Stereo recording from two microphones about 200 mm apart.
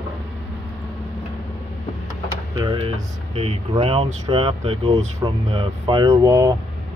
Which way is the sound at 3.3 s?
30° right (ahead or behind).